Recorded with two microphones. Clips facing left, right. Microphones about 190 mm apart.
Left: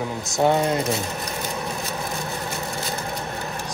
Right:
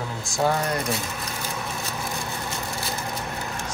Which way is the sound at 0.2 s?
20° left (ahead or behind).